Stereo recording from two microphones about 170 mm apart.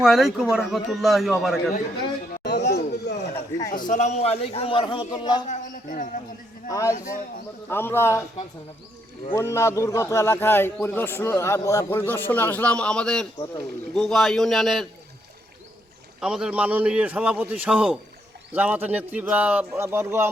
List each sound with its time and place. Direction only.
0.0 s speech: centre (ahead or behind)
2.4 s chatter: 85° left
3.7 s a man's voice: 50° left (ahead or behind); by 5.4 s 25° left (ahead or behind)
5.5 s a man's voice: 50° left (ahead or behind)
6.7 s a man's voice: 20° left (ahead or behind)
6.9 s speech: 50° left (ahead or behind)
7.7 s a man's voice: 15° left (ahead or behind)
9.3 s a man's voice: 15° left (ahead or behind); by 14.8 s centre (ahead or behind)
16.2 s a man's voice: 5° right (ahead or behind)